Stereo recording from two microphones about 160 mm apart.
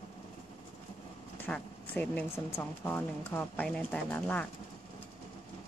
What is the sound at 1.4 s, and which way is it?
Speech, 10° left (ahead or behind).